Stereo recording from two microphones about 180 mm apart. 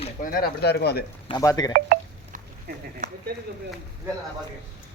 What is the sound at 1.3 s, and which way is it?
Speech, 20° left (ahead or behind).